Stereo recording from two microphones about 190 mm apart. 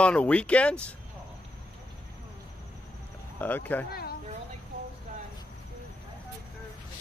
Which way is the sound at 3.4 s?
10° left (ahead or behind).